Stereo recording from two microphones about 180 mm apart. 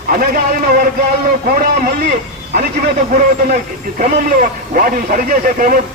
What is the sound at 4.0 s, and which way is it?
Speech, 50° right (ahead or behind).